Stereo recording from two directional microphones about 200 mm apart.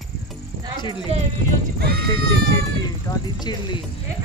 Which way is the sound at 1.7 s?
50° right (ahead or behind).